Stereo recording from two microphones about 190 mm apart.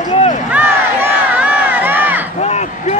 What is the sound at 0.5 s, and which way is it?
Crowd, 10° right (ahead or behind).